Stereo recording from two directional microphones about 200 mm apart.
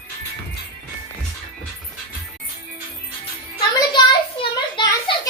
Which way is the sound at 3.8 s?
25° left (ahead or behind).